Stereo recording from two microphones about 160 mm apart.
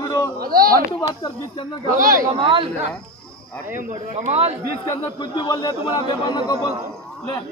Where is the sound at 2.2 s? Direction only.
30° right (ahead or behind).